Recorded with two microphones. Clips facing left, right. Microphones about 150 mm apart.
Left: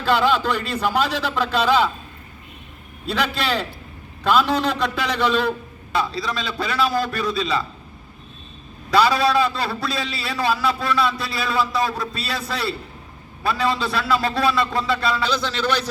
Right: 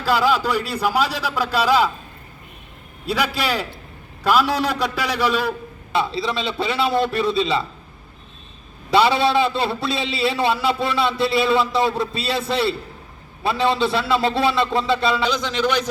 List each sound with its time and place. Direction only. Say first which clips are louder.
0.0 s a man's voice: even; 5° right (ahead or behind)
3.1 s a man's voice: right 1 dB; 10° right (ahead or behind)
5.9 s a man's voice: right 2 dB; 25° right (ahead or behind)
8.9 s a man's voice: right 1 dB; 25° right (ahead or behind)